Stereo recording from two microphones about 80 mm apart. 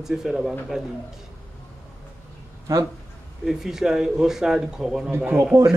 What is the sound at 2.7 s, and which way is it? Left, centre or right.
Speech, right.